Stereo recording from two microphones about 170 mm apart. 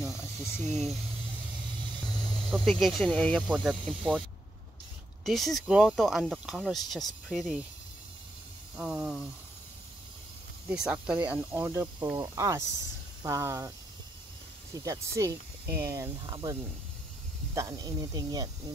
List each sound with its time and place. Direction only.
0.7 s speech: 40° right (ahead or behind)
2.0 s snake: 25° left (ahead or behind)
2.4 s speech: centre (ahead or behind)
5.2 s speech: centre (ahead or behind)
8.7 s speech: 5° right (ahead or behind)
10.7 s speech: 5° right (ahead or behind)
17.6 s speech: 20° right (ahead or behind)